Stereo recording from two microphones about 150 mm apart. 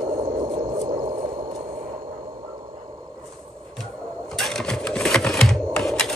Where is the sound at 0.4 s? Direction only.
40° right (ahead or behind).